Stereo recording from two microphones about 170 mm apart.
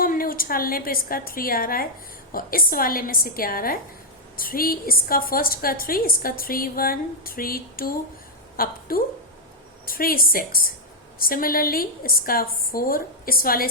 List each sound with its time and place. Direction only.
0.0 s a woman's voice: 55° left (ahead or behind)